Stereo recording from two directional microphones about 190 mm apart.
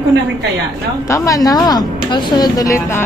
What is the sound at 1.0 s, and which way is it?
Speech, 15° left (ahead or behind).